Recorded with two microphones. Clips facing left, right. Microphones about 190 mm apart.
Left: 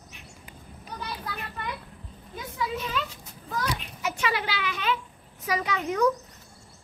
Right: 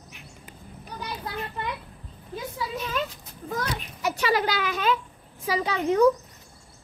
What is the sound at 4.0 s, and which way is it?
Speech, 40° right (ahead or behind).